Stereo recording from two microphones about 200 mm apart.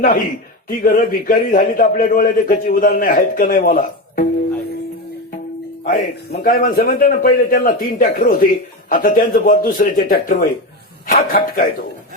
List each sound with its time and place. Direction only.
0.7 s a man's voice: 45° left (ahead or behind)
5.8 s a man's voice: 45° left (ahead or behind)